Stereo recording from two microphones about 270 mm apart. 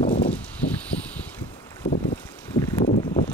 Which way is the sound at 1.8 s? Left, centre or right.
Left.